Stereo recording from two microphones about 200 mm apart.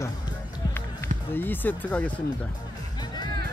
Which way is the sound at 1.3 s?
10° left (ahead or behind).